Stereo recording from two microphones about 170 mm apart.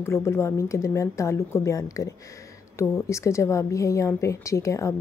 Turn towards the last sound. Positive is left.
turn(degrees=15)  # may be behind; listen again after turning